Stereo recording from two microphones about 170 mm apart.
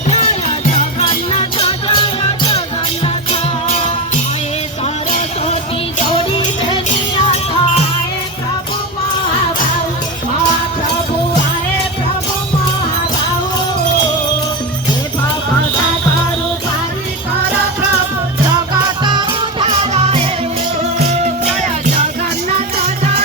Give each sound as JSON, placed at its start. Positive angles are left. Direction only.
{"t": 0.1, "sound": "music", "side_deg": 35}
{"t": 19.0, "sound": "music", "side_deg": -25}
{"t": 19.9, "sound": "music", "side_deg": -40}